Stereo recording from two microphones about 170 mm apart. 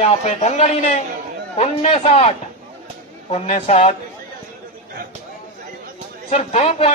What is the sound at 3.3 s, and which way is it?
Speech, 40° left (ahead or behind).